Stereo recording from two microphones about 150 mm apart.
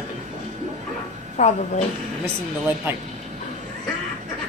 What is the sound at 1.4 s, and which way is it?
Speech, 50° left (ahead or behind).